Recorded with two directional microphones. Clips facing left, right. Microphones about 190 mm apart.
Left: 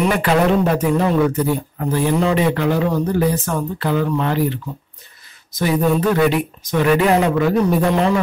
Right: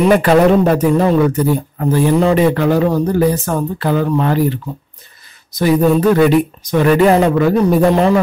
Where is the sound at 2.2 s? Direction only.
45° right (ahead or behind).